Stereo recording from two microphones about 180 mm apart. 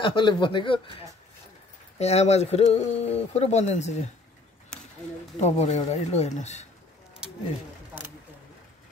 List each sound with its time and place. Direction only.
0.0 s speech: 25° left (ahead or behind)
5.4 s speech: 40° left (ahead or behind)